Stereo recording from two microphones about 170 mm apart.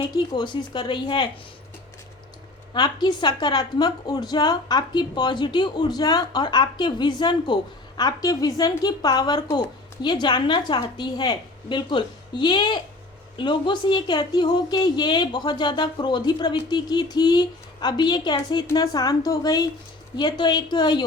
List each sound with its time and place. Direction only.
0.0 s a woman's voice: 30° left (ahead or behind)
2.7 s a woman's voice: 25° left (ahead or behind)